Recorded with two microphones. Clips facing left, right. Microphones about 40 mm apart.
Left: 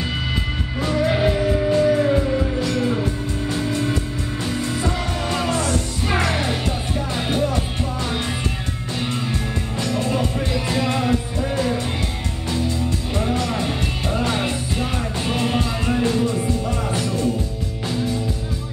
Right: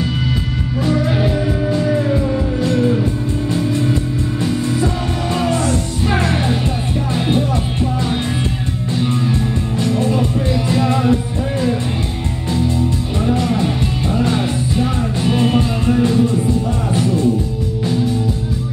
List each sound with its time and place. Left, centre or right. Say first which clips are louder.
1.2 s music: right 1 dB; left
2.6 s music: right 6 dB; right
4.5 s music: right 4 dB; left
5.3 s music: right 4 dB; right
9.3 s music: right 6 dB; right
12.5 s music: right 6 dB; right
13.5 s music: right 5 dB; left
16.0 s music: right 5 dB; right